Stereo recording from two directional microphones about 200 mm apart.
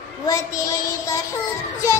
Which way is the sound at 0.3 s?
15° left (ahead or behind).